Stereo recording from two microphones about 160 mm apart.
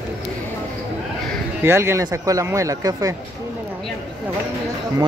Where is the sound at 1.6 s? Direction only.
15° right (ahead or behind).